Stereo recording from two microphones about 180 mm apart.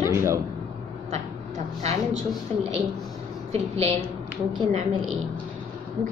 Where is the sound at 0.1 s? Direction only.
15° right (ahead or behind).